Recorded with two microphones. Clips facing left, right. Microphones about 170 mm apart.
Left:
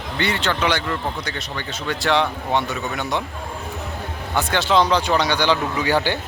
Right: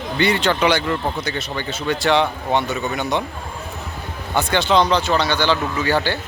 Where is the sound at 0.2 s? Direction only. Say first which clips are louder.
Right 4 dB; 15° right (ahead or behind).